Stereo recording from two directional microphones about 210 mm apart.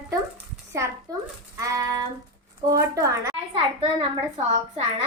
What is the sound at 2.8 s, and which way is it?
A woman's voice, 15° right (ahead or behind).